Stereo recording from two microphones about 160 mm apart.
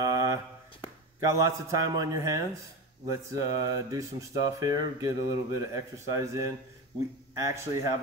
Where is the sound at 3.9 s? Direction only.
20° right (ahead or behind).